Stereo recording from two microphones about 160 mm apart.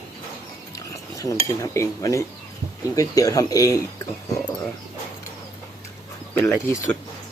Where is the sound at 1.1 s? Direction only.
20° left (ahead or behind).